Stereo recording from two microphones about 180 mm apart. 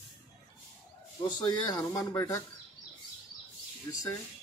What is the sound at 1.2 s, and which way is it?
Speech, 25° left (ahead or behind).